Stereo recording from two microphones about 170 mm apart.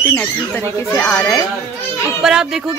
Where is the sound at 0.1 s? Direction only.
10° left (ahead or behind).